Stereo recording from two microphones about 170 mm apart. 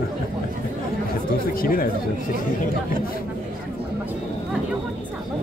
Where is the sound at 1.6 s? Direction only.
60° left (ahead or behind).